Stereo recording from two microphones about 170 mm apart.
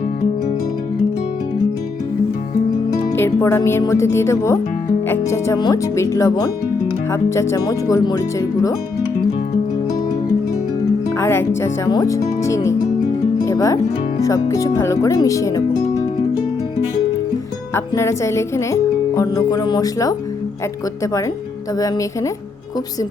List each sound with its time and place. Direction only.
3.1 s speech: 15° left (ahead or behind)
11.2 s speech: 15° left (ahead or behind)
13.4 s music: 20° left (ahead or behind)
14.2 s speech: 20° left (ahead or behind)
17.7 s speech: 15° left (ahead or behind)